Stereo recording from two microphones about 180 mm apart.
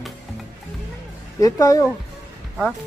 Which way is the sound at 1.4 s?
20° left (ahead or behind).